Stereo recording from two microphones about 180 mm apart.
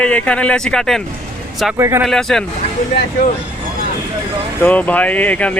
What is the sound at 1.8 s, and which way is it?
Speech, 15° right (ahead or behind).